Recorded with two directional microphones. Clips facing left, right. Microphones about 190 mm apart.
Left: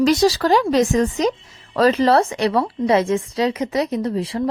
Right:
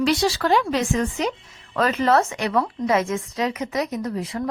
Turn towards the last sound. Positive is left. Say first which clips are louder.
# left 5 dB
turn(degrees=30)  # may be behind; listen again after turning